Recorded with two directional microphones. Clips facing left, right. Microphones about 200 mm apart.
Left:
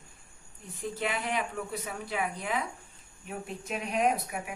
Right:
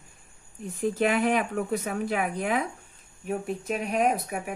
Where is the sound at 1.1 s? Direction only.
55° right (ahead or behind).